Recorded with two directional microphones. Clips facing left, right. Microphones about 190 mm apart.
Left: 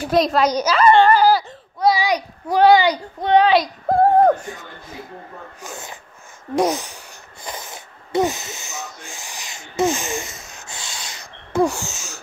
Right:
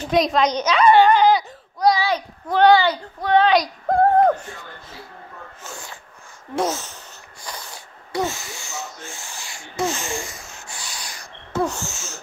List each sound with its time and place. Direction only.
0.0 s a child's voice: centre (ahead or behind); by 3.3 s 20° left (ahead or behind)
3.4 s a woman's voice: centre (ahead or behind)
7.4 s wheeze: 20° left (ahead or behind)
11.5 s wheeze: 10° left (ahead or behind)